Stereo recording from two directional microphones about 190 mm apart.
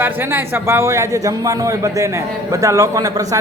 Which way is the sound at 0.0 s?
10° right (ahead or behind).